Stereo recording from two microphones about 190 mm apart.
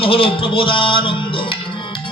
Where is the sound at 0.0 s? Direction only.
30° left (ahead or behind).